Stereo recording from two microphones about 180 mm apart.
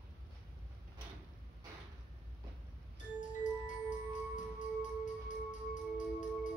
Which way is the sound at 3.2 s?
45° left (ahead or behind).